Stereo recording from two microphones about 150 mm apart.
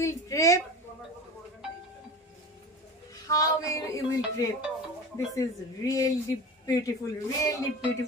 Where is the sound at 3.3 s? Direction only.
20° left (ahead or behind).